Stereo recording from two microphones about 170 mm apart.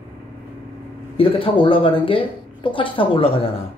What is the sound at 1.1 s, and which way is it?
A woman's voice, 30° left (ahead or behind).